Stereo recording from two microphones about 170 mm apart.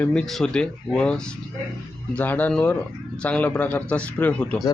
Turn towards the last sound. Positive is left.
turn(degrees=10)  # may be behind; listen again after turning